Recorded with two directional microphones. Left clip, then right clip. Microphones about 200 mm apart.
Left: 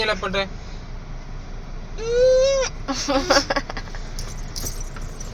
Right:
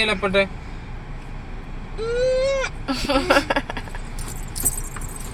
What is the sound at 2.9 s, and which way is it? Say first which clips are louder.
Speech: right 2 dB; centre (ahead or behind).